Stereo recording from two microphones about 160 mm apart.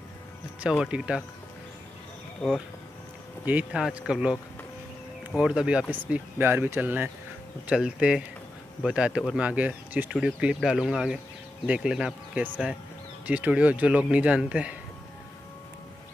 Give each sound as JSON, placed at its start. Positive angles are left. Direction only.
{"t": 0.6, "sound": "speech", "side_deg": -5}
{"t": 3.4, "sound": "speech", "side_deg": -10}